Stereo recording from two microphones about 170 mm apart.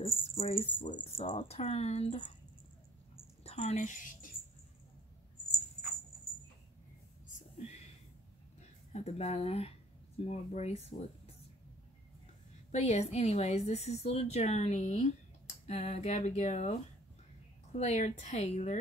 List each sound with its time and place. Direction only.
0.0 s a woman's voice: 35° left (ahead or behind)
3.4 s a woman's voice: 40° left (ahead or behind)
8.9 s speech: 40° left (ahead or behind)
12.7 s a woman's voice: 40° left (ahead or behind)
17.7 s a woman's voice: 45° left (ahead or behind)